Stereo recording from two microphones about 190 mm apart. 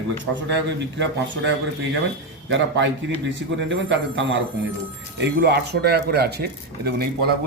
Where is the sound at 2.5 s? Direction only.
70° right (ahead or behind).